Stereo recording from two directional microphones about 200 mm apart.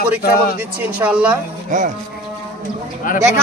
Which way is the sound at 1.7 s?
40° right (ahead or behind).